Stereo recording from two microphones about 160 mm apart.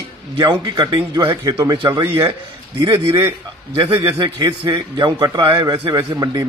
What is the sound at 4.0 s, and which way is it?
A man's voice, 20° right (ahead or behind).